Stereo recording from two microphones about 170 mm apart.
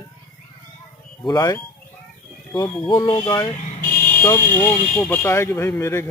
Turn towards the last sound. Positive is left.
turn(degrees=15)  # may be behind; listen again after turning